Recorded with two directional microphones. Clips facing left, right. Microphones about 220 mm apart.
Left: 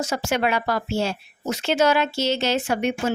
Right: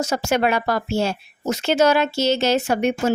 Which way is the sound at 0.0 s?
40° right (ahead or behind).